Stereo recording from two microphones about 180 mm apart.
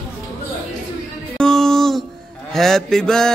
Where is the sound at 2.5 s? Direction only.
Centre (ahead or behind).